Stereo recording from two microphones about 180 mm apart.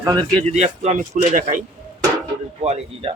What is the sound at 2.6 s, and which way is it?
Speech, 35° right (ahead or behind).